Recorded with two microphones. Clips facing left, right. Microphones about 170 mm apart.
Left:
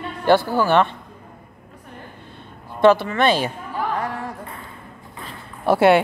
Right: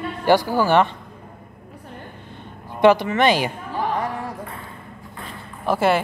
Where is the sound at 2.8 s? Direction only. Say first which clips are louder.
Even; 15° right (ahead or behind).